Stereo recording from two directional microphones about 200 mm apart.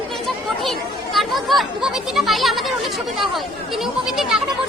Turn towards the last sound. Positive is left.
turn(degrees=0)  # may be behind; listen again after turning